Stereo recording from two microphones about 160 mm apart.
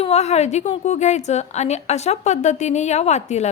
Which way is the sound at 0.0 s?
40° left (ahead or behind).